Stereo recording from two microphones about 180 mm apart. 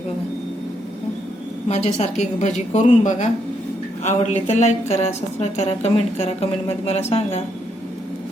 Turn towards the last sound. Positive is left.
turn(degrees=35)  # may be behind; listen again after turning